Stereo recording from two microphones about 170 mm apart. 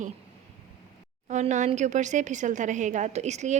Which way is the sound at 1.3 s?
45° right (ahead or behind).